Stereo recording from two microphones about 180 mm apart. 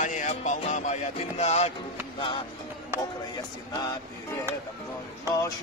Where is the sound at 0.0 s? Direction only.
45° left (ahead or behind).